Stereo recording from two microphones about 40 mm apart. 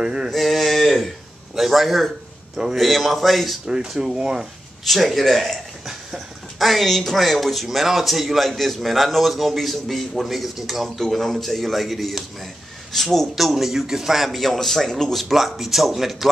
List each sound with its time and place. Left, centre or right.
0.0 s speech: centre
0.3 s a sound: centre
1.5 s a man's voice: centre
2.5 s a man's voice: centre
2.8 s a man's voice: centre
3.6 s speech: centre
4.8 s a man's voice: centre
5.9 s dog: centre
6.7 s a man's voice: centre
15.1 s a man's voice: centre